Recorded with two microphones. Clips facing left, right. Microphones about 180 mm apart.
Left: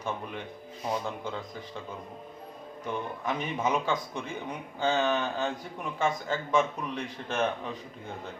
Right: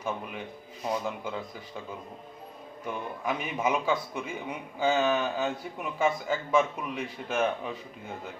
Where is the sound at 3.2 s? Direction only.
10° right (ahead or behind).